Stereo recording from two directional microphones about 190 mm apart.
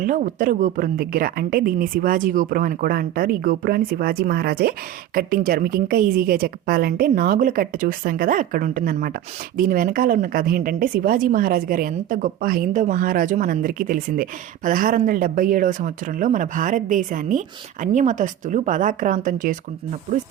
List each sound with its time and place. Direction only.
0.0 s a woman's voice: 45° right (ahead or behind)